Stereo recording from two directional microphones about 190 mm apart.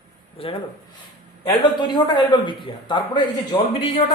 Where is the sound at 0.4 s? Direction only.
30° left (ahead or behind).